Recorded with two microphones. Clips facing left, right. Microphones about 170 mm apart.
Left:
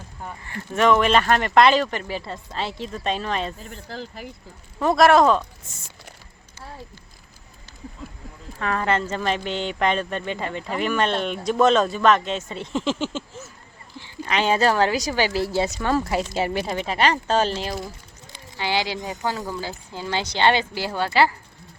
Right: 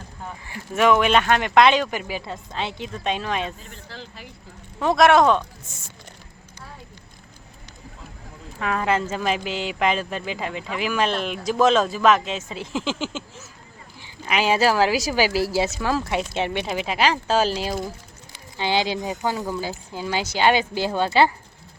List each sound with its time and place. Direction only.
0.4 s speech: 5° right (ahead or behind)
3.8 s speech: 45° left (ahead or behind)
4.8 s speech: centre (ahead or behind)
8.5 s a woman's voice: 5° right (ahead or behind)